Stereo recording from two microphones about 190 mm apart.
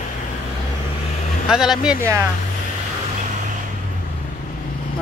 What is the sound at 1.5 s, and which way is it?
Speech, centre (ahead or behind).